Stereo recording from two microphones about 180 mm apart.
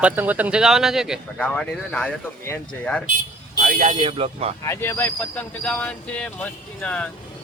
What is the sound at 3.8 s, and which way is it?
Speech, 30° right (ahead or behind).